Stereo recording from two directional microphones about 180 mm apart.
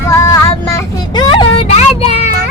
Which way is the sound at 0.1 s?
15° left (ahead or behind).